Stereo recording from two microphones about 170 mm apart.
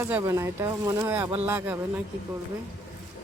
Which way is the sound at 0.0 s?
15° right (ahead or behind).